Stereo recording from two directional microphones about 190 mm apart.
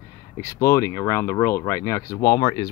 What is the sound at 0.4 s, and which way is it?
Speech, 15° left (ahead or behind).